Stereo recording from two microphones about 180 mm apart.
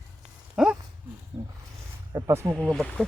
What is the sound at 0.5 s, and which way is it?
Dog, 5° right (ahead or behind).